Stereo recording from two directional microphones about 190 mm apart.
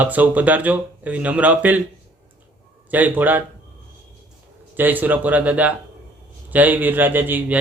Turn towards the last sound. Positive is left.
turn(degrees=-10)  # may be behind; listen again after turning